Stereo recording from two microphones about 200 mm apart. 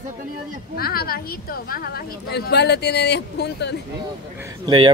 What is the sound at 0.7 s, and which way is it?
A woman's voice, 50° left (ahead or behind).